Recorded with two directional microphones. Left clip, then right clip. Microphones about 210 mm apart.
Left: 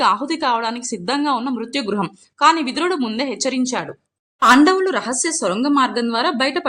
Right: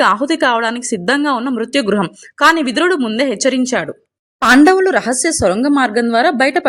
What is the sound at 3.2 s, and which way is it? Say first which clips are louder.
A woman's voice: right 7 dB; 25° right (ahead or behind).